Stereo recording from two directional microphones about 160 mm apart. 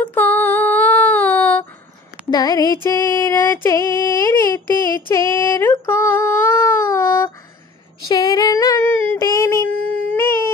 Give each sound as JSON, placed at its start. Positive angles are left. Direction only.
{"t": 0.0, "sound": "female singing", "side_deg": 10}
{"t": 2.3, "sound": "female singing", "side_deg": 25}
{"t": 5.1, "sound": "a sound", "side_deg": 15}
{"t": 8.1, "sound": "female singing", "side_deg": 25}
{"t": 8.8, "sound": "a sound", "side_deg": 10}
{"t": 9.2, "sound": "child singing", "side_deg": 20}
{"t": 9.8, "sound": "baby cry", "side_deg": 10}